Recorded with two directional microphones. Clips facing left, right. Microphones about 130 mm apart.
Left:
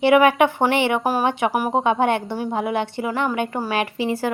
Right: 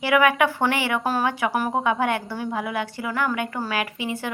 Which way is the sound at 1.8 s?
25° left (ahead or behind).